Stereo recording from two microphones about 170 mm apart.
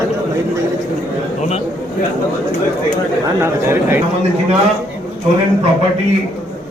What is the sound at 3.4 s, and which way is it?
Speech, 15° right (ahead or behind).